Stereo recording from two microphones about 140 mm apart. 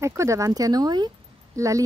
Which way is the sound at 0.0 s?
20° right (ahead or behind).